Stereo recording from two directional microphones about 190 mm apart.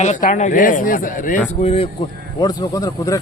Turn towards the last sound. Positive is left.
turn(degrees=20)  # may be behind; listen again after turning